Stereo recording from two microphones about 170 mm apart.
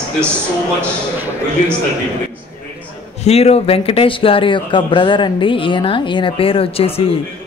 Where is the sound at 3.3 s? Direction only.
40° left (ahead or behind).